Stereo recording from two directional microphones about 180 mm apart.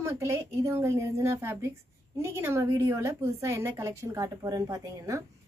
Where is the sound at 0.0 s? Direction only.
15° right (ahead or behind).